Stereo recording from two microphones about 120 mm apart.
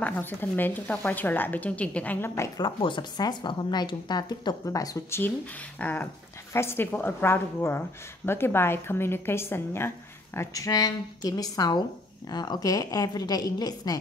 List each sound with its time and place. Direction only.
0.0 s speech: 15° left (ahead or behind)
2.6 s a woman's voice: 40° left (ahead or behind)
5.8 s a woman's voice: 15° left (ahead or behind); by 13.9 s 35° left (ahead or behind)